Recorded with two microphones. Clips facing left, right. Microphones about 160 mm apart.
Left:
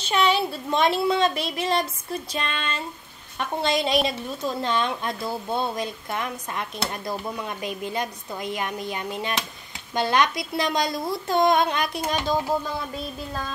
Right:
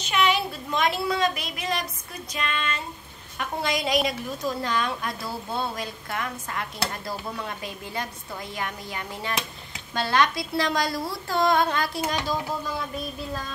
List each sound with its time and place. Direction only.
0.0 s a woman's voice: 30° left (ahead or behind)